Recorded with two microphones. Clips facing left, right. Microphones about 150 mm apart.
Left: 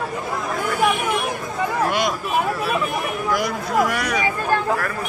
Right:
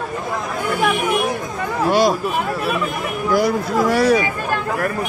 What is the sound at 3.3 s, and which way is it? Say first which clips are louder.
Speech: right 5 dB; 30° right (ahead or behind).